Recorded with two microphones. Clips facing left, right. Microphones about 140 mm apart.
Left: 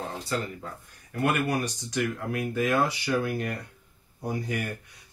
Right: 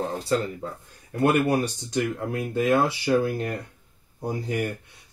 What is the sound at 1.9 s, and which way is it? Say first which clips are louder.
Speech: right 3 dB; 25° right (ahead or behind).